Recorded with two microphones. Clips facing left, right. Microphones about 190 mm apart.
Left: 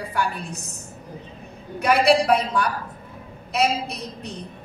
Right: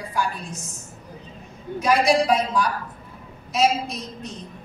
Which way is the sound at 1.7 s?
65° left (ahead or behind).